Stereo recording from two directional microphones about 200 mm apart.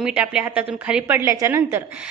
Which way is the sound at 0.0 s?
5° right (ahead or behind).